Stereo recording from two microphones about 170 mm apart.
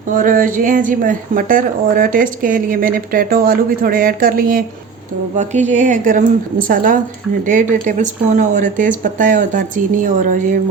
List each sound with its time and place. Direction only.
0.1 s speech: 50° right (ahead or behind)
5.4 s speech: 45° right (ahead or behind)